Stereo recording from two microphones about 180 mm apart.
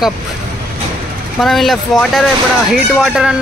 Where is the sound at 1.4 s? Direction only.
Centre (ahead or behind).